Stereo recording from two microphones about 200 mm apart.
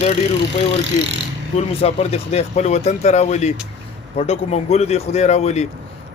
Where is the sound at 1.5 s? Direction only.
30° left (ahead or behind).